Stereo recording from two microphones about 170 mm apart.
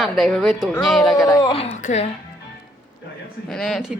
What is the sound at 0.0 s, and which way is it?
A man's voice, centre (ahead or behind).